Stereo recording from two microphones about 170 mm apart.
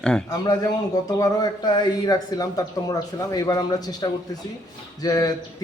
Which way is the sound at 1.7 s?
25° left (ahead or behind).